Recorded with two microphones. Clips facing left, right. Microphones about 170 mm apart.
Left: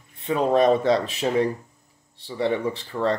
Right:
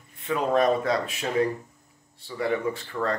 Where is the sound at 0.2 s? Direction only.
25° left (ahead or behind).